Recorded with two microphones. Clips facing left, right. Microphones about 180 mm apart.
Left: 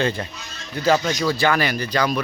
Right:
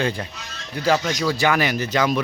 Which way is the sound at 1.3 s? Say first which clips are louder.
Right 2 dB; 15° right (ahead or behind).